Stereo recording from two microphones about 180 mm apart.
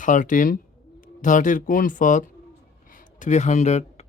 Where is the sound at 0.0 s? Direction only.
45° left (ahead or behind).